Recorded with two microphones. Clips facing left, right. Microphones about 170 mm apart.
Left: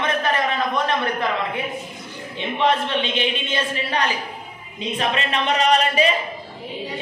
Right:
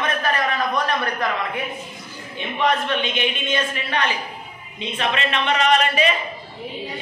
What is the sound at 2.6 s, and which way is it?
A man's voice, 30° left (ahead or behind).